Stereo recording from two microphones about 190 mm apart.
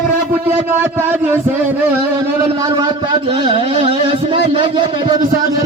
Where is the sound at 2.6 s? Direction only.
20° right (ahead or behind).